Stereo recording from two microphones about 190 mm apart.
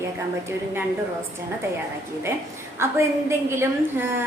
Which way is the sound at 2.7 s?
15° right (ahead or behind).